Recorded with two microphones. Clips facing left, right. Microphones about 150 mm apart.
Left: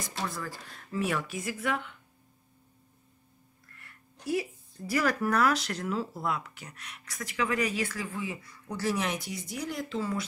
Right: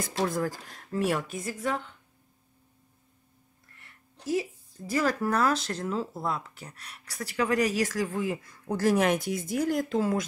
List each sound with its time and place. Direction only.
0.2 s speech: 50° right (ahead or behind)
3.8 s speech: 25° right (ahead or behind); by 10.2 s 45° right (ahead or behind)